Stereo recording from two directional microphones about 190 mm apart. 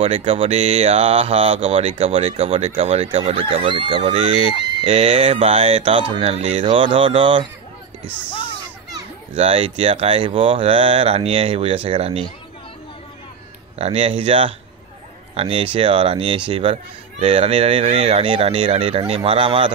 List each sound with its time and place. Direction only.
0.0 s speech: 30° right (ahead or behind)
9.3 s speech: 30° right (ahead or behind)
13.7 s speech: 30° right (ahead or behind)